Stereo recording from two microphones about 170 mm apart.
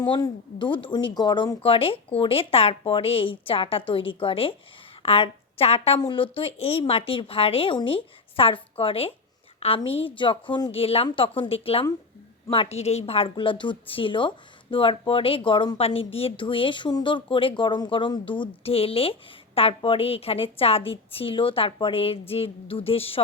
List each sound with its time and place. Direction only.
0.1 s a woman's voice: 30° left (ahead or behind)